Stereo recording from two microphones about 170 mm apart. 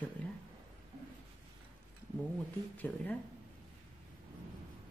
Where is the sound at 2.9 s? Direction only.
10° left (ahead or behind).